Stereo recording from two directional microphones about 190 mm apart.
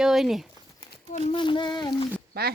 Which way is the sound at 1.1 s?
25° left (ahead or behind).